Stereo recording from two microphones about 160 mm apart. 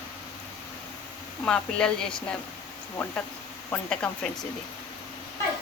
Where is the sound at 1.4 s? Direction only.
5° left (ahead or behind).